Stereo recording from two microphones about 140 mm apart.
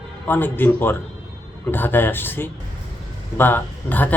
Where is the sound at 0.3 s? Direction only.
15° left (ahead or behind).